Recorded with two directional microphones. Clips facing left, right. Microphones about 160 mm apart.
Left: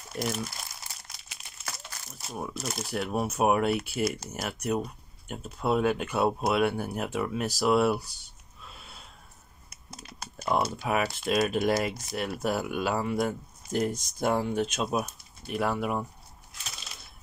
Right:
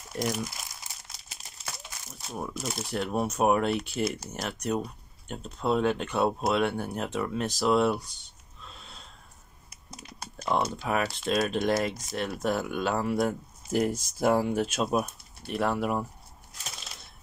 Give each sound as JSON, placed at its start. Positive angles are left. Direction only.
{"t": 2.1, "sound": "speech", "side_deg": 5}
{"t": 8.6, "sound": "a sound", "side_deg": 10}
{"t": 9.8, "sound": "typing", "side_deg": -15}
{"t": 10.4, "sound": "speech", "side_deg": 5}